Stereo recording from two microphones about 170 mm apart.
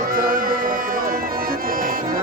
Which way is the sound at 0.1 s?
55° right (ahead or behind).